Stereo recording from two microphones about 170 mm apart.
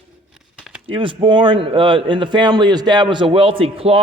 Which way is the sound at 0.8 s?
30° right (ahead or behind).